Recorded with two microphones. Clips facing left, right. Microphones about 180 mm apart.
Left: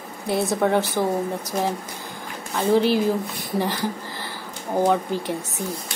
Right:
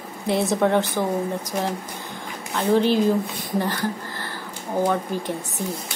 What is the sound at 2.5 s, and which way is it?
Speech, 10° left (ahead or behind).